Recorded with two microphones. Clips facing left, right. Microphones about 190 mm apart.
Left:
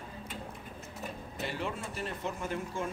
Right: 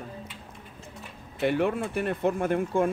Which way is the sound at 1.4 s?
60° right (ahead or behind).